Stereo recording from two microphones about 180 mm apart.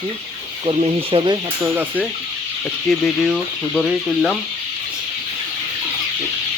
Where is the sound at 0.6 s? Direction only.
30° right (ahead or behind).